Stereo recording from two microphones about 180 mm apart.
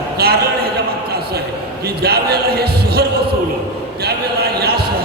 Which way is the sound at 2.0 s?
60° right (ahead or behind).